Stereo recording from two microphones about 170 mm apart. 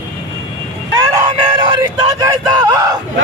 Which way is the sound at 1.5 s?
20° right (ahead or behind).